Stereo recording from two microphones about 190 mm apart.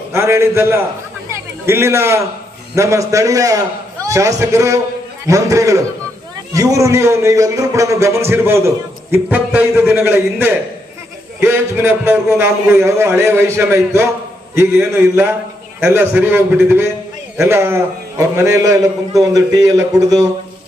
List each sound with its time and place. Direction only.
0.1 s a man's voice: 15° right (ahead or behind)
1.3 s a sound: 15° right (ahead or behind)
2.7 s a man's voice: 15° right (ahead or behind)